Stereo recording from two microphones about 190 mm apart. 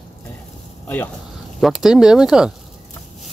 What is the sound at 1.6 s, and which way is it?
Speech, 5° right (ahead or behind).